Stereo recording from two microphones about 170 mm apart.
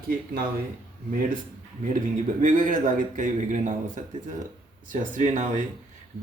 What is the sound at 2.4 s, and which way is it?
Speech, 50° right (ahead or behind).